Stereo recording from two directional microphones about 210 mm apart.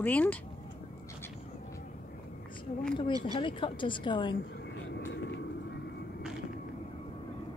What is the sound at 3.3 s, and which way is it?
A woman's voice, 25° left (ahead or behind).